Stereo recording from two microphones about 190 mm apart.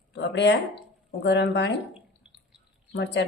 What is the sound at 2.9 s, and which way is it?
Speech, 70° left (ahead or behind).